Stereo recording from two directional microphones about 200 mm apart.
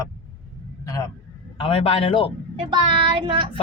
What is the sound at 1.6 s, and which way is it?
Speech, 30° left (ahead or behind).